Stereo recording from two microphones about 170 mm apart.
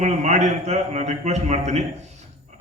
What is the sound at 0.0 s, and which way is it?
Speech, 40° right (ahead or behind).